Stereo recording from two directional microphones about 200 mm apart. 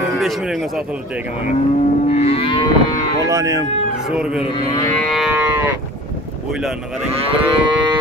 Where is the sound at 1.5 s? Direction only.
35° left (ahead or behind).